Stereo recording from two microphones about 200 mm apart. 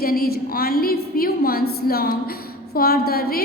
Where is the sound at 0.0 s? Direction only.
50° left (ahead or behind).